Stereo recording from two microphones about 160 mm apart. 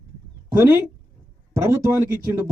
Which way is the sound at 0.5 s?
15° right (ahead or behind).